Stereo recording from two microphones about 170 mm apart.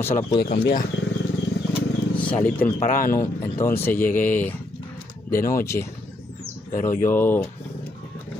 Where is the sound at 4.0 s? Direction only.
50° left (ahead or behind).